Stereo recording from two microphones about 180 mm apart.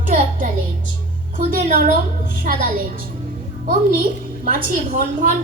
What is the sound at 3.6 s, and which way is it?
A woman's voice, 50° right (ahead or behind).